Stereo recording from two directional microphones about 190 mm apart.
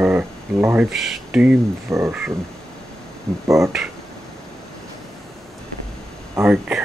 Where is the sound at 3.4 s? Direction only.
15° right (ahead or behind).